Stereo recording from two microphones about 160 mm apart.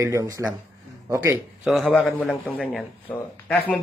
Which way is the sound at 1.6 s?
Centre (ahead or behind).